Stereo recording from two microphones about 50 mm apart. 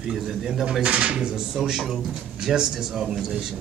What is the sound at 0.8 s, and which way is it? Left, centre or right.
A man's voice, right.